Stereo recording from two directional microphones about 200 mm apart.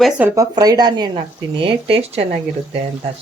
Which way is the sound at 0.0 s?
10° right (ahead or behind).